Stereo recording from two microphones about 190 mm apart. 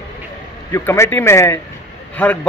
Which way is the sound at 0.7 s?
15° left (ahead or behind).